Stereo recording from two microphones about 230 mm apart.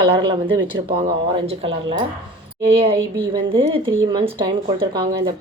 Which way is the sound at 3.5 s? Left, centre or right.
Right.